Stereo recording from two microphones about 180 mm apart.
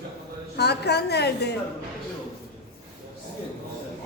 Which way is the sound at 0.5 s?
65° left (ahead or behind).